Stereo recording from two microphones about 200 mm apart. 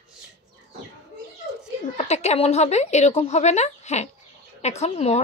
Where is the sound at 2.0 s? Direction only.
35° left (ahead or behind).